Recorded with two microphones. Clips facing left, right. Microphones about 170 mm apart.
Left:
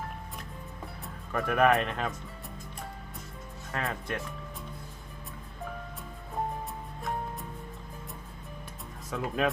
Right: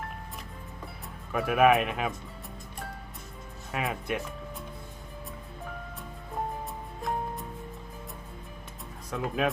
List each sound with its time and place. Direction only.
1.3 s speech: 5° right (ahead or behind)
3.7 s speech: 10° right (ahead or behind)
9.0 s speech: centre (ahead or behind)